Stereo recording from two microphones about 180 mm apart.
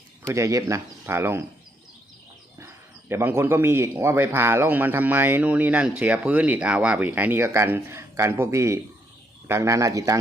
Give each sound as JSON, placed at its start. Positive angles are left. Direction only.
{"t": 0.2, "sound": "a man's voice", "side_deg": -15}
{"t": 3.1, "sound": "a man's voice", "side_deg": -15}